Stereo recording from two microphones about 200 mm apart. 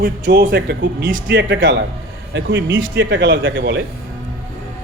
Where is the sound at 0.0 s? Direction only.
60° right (ahead or behind).